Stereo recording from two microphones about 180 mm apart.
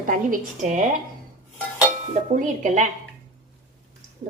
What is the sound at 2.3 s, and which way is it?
Speech, 45° right (ahead or behind).